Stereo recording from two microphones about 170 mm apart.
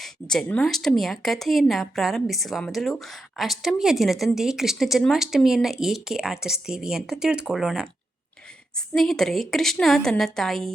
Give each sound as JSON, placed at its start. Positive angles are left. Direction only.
{"t": 0.0, "sound": "speech", "side_deg": 5}